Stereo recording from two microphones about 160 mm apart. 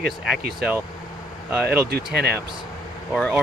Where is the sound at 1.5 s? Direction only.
10° right (ahead or behind).